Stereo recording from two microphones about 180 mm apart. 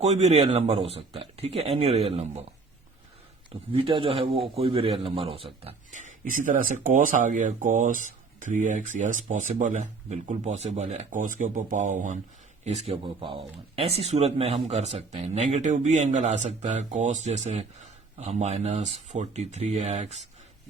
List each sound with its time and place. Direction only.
0.0 s speech: 40° right (ahead or behind)
3.5 s speech: 30° right (ahead or behind)